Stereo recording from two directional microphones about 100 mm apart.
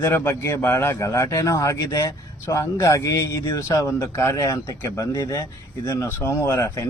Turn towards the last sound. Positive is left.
turn(degrees=30)  # may be behind; listen again after turning